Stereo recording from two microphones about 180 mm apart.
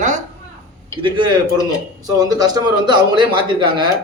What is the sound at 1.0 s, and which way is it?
Speech, 25° right (ahead or behind).